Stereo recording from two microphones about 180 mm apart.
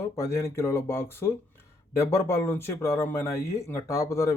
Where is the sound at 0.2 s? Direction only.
15° left (ahead or behind).